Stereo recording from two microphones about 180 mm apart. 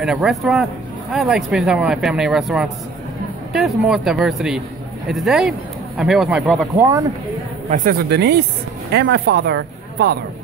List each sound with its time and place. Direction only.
0.0 s speech: 5° right (ahead or behind)
6.7 s speech: 20° right (ahead or behind)
7.7 s speech: 55° right (ahead or behind)